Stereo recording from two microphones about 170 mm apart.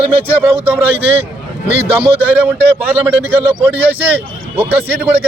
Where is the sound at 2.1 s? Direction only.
10° right (ahead or behind).